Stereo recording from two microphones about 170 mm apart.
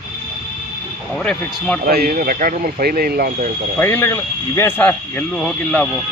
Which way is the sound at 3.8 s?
15° left (ahead or behind).